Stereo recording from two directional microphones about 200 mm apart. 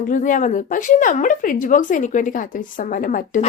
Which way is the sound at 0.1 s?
40° left (ahead or behind).